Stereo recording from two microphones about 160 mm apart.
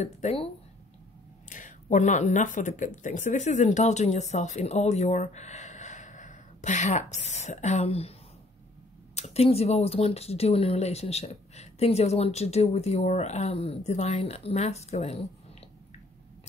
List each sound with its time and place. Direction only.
0.0 s speech: 40° left (ahead or behind)
1.5 s speech: 50° left (ahead or behind)
9.1 s speech: 40° left (ahead or behind)